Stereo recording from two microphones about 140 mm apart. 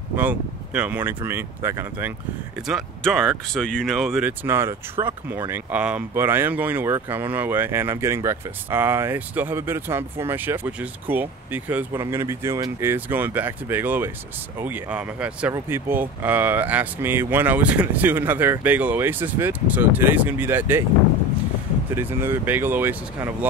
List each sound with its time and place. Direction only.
0.1 s speech: 10° right (ahead or behind)
2.6 s speech: centre (ahead or behind)
4.2 s speech: 15° right (ahead or behind)
21.9 s speech: 15° right (ahead or behind)